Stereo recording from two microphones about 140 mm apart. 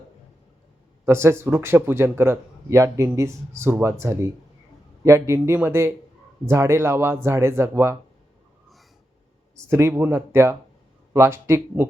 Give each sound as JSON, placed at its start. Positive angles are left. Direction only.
{"t": 1.0, "sound": "speech", "side_deg": -20}
{"t": 9.6, "sound": "speech", "side_deg": -20}